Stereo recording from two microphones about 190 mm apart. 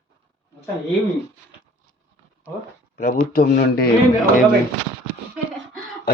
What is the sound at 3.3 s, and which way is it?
Speech, 50° left (ahead or behind).